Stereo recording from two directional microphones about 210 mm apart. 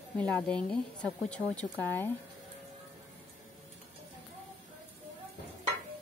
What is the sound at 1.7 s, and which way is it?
Speech, 15° right (ahead or behind).